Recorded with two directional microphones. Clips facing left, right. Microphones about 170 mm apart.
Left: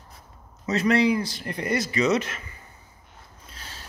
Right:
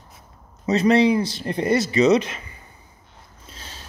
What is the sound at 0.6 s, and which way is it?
Speech, 20° right (ahead or behind).